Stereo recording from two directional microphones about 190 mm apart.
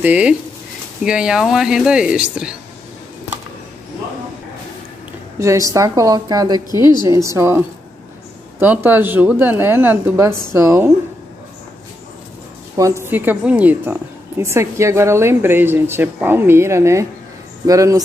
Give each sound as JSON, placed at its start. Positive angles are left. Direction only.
{"t": 0.0, "sound": "a woman's voice", "side_deg": -5}
{"t": 5.4, "sound": "a woman's voice", "side_deg": -15}
{"t": 12.7, "sound": "a woman's voice", "side_deg": -15}